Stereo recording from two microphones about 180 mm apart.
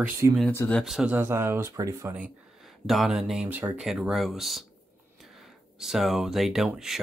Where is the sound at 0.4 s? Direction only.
10° left (ahead or behind); by 2.1 s 20° right (ahead or behind).